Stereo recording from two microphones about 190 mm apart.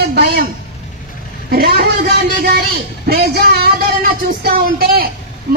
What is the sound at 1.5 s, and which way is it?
A man's voice, 55° right (ahead or behind).